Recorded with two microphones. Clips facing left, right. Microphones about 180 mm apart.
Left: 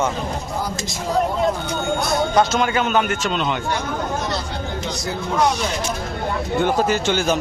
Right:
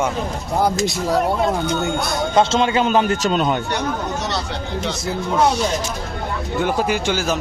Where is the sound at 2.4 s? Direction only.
25° right (ahead or behind).